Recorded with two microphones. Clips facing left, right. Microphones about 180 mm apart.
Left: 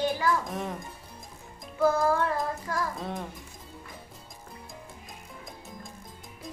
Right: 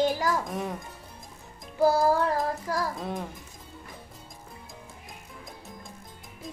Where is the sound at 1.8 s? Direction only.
35° right (ahead or behind).